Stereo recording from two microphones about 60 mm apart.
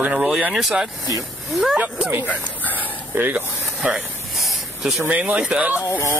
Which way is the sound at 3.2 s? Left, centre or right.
Right.